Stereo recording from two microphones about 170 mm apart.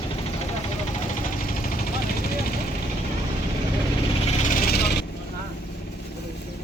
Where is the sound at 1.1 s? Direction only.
55° left (ahead or behind).